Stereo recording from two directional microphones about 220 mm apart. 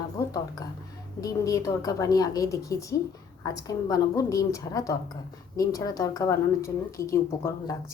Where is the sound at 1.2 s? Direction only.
15° left (ahead or behind).